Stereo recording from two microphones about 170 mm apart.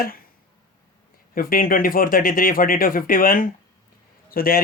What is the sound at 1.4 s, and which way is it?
Speech, 55° left (ahead or behind).